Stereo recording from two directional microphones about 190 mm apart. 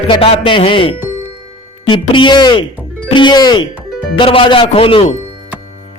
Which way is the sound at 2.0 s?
25° left (ahead or behind).